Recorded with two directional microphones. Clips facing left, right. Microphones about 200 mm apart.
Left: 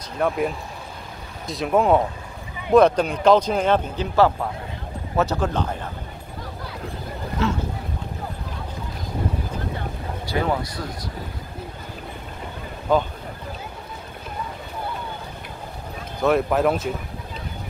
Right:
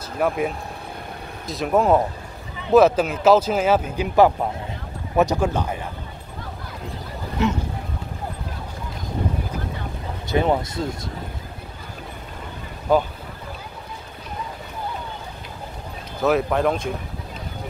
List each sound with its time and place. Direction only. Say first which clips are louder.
0.2 s speech: right 1 dB; 5° right (ahead or behind)
1.5 s speech: even; centre (ahead or behind)
7.4 s speech: right 2 dB; 15° right (ahead or behind)
10.2 s speech: right 4 dB; 20° right (ahead or behind)
12.9 s speech: right 1 dB; 10° right (ahead or behind)
16.2 s speech: even; centre (ahead or behind)